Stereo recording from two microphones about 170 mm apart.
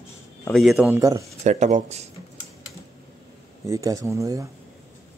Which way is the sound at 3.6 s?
20° right (ahead or behind).